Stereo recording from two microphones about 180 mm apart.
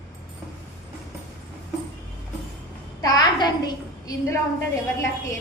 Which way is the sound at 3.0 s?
20° left (ahead or behind).